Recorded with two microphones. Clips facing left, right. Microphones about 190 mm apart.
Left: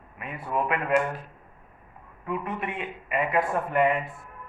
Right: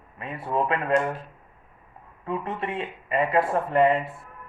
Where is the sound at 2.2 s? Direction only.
25° right (ahead or behind).